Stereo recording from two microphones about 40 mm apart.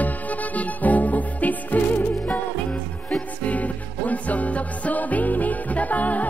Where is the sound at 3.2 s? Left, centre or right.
Left.